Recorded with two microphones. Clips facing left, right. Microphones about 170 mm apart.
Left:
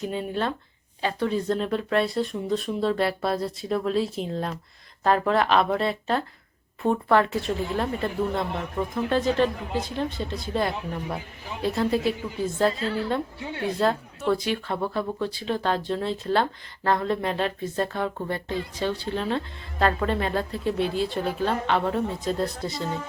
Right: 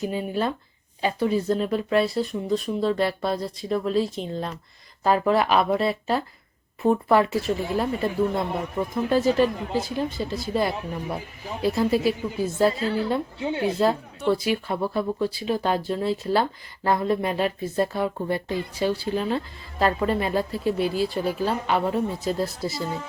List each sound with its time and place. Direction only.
0.0 s a woman's voice: 5° right (ahead or behind)
13.4 s a woman's voice: 25° right (ahead or behind)
14.2 s a woman's voice: 5° right (ahead or behind)